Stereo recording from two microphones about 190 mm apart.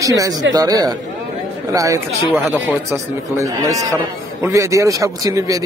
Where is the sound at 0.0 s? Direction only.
20° right (ahead or behind).